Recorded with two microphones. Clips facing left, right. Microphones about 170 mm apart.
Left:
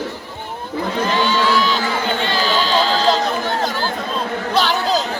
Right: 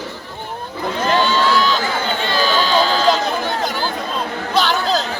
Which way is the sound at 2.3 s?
30° left (ahead or behind).